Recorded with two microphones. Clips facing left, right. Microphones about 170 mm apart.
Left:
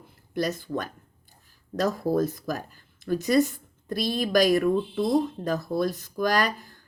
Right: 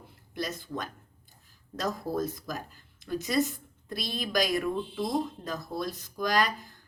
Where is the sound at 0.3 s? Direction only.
50° left (ahead or behind).